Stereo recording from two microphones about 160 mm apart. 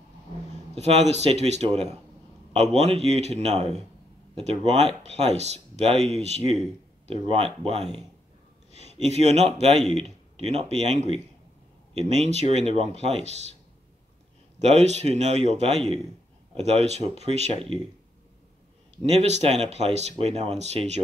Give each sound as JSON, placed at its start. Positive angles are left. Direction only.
{"t": 0.7, "sound": "speech", "side_deg": -40}
{"t": 14.6, "sound": "speech", "side_deg": -45}
{"t": 19.0, "sound": "speech", "side_deg": -45}